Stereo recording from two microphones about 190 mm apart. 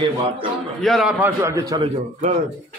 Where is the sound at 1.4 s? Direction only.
15° right (ahead or behind).